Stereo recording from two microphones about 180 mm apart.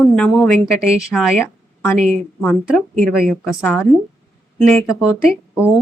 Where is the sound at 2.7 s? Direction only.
Centre (ahead or behind).